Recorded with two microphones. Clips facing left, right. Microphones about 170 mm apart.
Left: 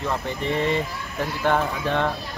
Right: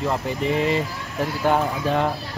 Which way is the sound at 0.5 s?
5° right (ahead or behind).